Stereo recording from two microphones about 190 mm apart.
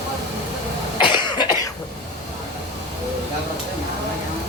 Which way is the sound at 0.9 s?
25° left (ahead or behind).